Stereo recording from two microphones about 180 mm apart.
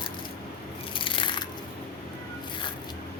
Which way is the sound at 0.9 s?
30° left (ahead or behind).